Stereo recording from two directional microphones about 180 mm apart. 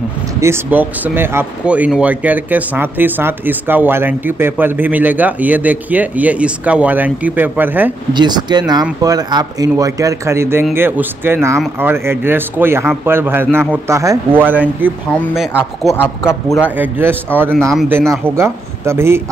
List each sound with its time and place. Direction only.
0.4 s speech: 10° right (ahead or behind)
8.1 s speech: 25° right (ahead or behind); by 16.0 s centre (ahead or behind)
16.3 s a man's voice: 15° left (ahead or behind)
16.6 s speech: 10° right (ahead or behind)